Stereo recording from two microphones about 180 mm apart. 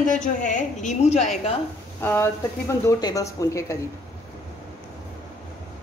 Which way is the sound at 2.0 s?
15° left (ahead or behind).